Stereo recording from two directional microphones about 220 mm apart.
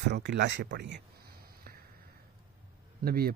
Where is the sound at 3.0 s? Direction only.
45° right (ahead or behind).